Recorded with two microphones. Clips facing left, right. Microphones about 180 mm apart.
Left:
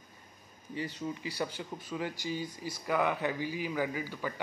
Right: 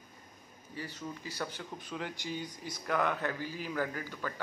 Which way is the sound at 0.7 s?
15° left (ahead or behind).